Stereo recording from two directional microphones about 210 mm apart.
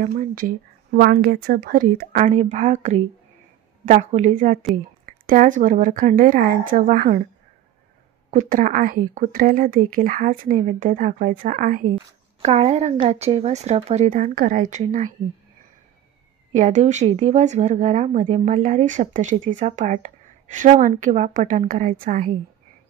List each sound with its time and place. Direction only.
0.0 s a woman's voice: 40° right (ahead or behind)
8.3 s a woman's voice: 40° right (ahead or behind)
16.5 s a woman's voice: 35° right (ahead or behind)